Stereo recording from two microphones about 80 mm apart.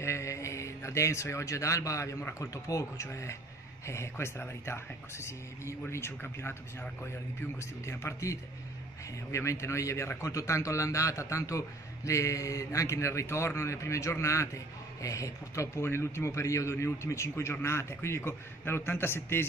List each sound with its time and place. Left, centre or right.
0.0 s a man's voice: left